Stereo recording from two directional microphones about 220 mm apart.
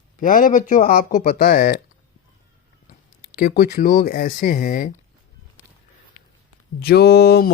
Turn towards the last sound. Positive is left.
turn(degrees=45)  # may be behind; listen again after turning